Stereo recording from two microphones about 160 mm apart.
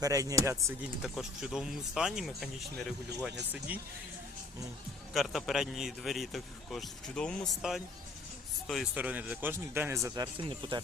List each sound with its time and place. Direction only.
0.0 s speech: 20° right (ahead or behind)
0.8 s speech: centre (ahead or behind)
5.1 s speech: centre (ahead or behind)
9.0 s speech: 10° right (ahead or behind)
10.3 s speech: 30° right (ahead or behind)